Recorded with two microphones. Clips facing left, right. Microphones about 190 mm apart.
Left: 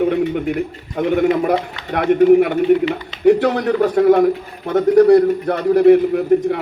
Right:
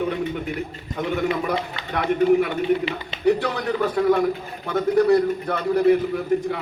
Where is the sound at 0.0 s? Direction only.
60° left (ahead or behind).